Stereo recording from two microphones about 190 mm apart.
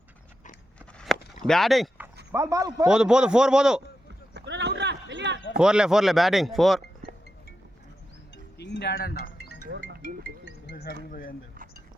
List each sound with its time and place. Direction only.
0.9 s a sound: centre (ahead or behind)
1.5 s speech: centre (ahead or behind)
2.3 s speech: 15° right (ahead or behind)
2.8 s speech: 5° right (ahead or behind)
4.4 s a sound: 65° right (ahead or behind)
5.5 s speech: 5° right (ahead or behind)
8.5 s speech: 60° left (ahead or behind)
10.7 s speech: 60° left (ahead or behind)